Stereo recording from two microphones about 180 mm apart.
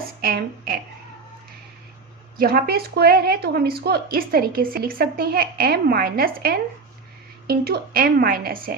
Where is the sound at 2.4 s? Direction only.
55° right (ahead or behind).